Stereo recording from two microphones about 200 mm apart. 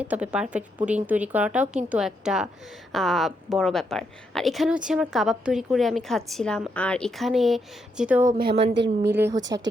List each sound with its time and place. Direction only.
0.0 s a woman's voice: 5° right (ahead or behind)
8.3 s a woman's voice: 50° right (ahead or behind)
9.1 s a woman's voice: 10° right (ahead or behind)